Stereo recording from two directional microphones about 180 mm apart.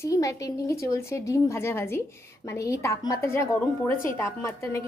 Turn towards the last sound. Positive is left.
turn(degrees=15)  # may be behind; listen again after turning